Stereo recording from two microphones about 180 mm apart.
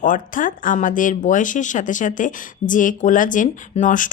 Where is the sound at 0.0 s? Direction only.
50° left (ahead or behind).